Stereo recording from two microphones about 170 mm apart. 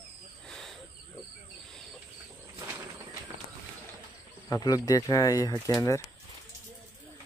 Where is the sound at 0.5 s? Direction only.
Centre (ahead or behind).